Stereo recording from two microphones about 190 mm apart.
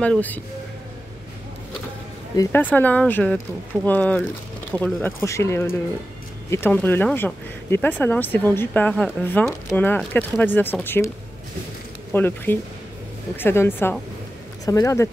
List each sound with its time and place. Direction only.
0.0 s speech: 5° left (ahead or behind)
2.3 s speech: 10° left (ahead or behind)
12.1 s speech: 10° left (ahead or behind)